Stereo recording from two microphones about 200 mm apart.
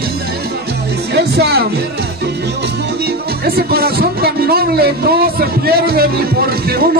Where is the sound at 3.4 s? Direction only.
50° right (ahead or behind).